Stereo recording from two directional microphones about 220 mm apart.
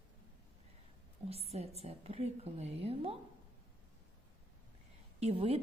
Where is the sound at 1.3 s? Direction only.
25° right (ahead or behind).